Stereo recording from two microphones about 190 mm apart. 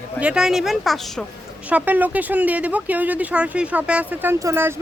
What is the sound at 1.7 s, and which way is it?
Speech, 10° right (ahead or behind).